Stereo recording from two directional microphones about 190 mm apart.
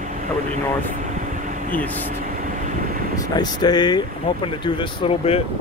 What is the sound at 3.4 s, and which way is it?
Speech, 20° left (ahead or behind).